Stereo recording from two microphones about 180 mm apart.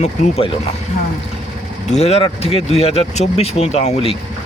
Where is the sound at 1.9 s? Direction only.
35° left (ahead or behind).